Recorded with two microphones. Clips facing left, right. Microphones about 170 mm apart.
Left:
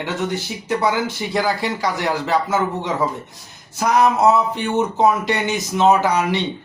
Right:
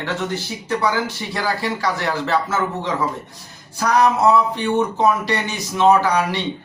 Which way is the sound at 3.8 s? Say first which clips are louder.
Left 1 dB; 20° left (ahead or behind).